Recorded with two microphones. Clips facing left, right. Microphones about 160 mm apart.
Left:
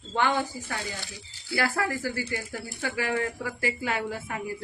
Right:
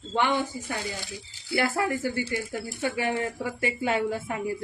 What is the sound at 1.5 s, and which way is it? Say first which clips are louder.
Speech: right 2 dB; 25° right (ahead or behind).